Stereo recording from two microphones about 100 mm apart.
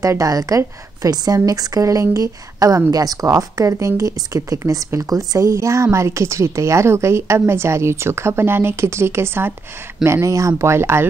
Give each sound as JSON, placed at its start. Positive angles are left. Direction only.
{"t": 0.0, "sound": "a woman's voice", "side_deg": -35}